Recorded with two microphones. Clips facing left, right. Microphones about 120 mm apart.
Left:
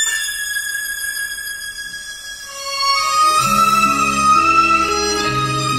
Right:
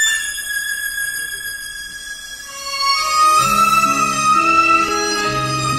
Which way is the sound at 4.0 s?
20° left (ahead or behind).